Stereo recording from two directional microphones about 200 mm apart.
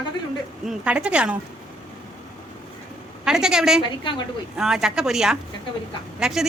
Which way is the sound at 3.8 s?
20° left (ahead or behind).